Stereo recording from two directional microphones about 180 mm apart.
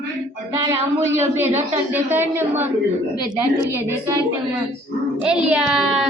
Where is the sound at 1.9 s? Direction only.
10° right (ahead or behind).